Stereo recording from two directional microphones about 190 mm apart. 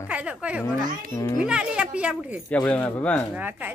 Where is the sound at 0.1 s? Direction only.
5° right (ahead or behind).